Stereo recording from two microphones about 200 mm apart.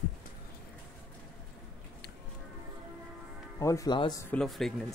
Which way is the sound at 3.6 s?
15° left (ahead or behind).